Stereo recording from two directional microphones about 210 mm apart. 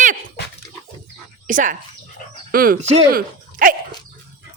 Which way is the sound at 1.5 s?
40° right (ahead or behind).